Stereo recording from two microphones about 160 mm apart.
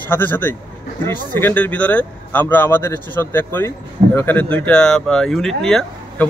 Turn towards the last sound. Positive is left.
turn(degrees=0)  # may be behind; listen again after turning